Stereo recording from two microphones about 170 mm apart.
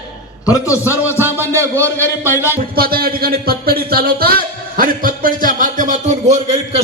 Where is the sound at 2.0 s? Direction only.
15° left (ahead or behind).